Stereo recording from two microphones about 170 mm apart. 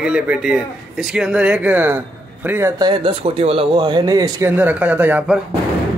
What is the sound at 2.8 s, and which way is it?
Speech, 30° right (ahead or behind).